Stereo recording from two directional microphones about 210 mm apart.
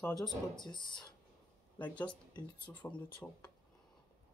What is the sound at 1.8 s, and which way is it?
Speech, 5° left (ahead or behind).